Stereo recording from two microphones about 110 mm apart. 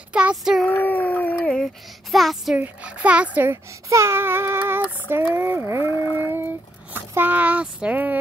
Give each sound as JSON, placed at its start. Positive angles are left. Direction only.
{"t": 0.1, "sound": "a child's voice", "side_deg": -10}
{"t": 0.7, "sound": "a sound", "side_deg": 15}
{"t": 1.6, "sound": "speech", "side_deg": 0}
{"t": 2.5, "sound": "a child's voice", "side_deg": -15}
{"t": 3.9, "sound": "child singing", "side_deg": -25}
{"t": 4.8, "sound": "speech", "side_deg": -20}